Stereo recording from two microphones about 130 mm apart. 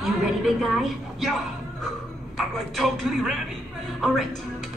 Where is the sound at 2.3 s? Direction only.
Centre (ahead or behind).